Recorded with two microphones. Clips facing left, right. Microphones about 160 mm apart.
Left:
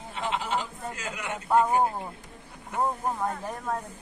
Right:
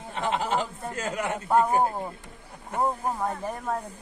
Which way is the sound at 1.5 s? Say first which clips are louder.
Even; 5° left (ahead or behind).